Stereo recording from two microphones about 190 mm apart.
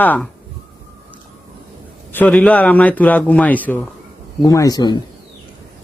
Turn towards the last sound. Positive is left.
turn(degrees=20)  # may be behind; listen again after turning